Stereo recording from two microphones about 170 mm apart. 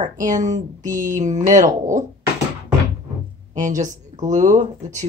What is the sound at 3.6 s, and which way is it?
A woman's voice, 50° right (ahead or behind).